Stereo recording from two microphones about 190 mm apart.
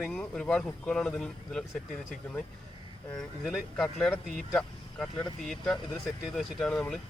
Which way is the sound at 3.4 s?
Centre (ahead or behind).